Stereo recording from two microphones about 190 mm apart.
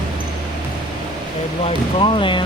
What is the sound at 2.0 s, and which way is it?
Speech, 25° left (ahead or behind).